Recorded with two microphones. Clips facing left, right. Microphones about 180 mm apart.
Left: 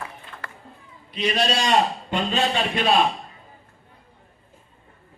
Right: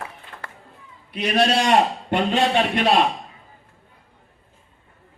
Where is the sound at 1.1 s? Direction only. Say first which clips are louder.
Right 4 dB; 60° right (ahead or behind).